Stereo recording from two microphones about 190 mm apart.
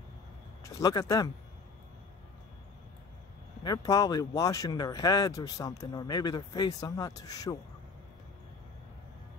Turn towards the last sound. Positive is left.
turn(degrees=20)  # may be behind; listen again after turning